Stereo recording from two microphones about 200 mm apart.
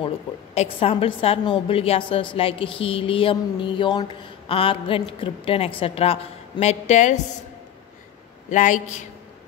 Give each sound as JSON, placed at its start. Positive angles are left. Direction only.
{"t": 0.6, "sound": "a woman's voice", "side_deg": 30}
{"t": 8.5, "sound": "speech", "side_deg": 40}